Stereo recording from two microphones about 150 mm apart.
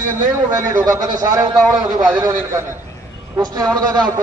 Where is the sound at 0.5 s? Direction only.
25° right (ahead or behind).